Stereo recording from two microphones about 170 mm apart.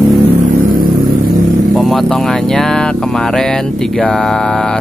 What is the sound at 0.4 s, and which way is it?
Vehicle, 55° right (ahead or behind).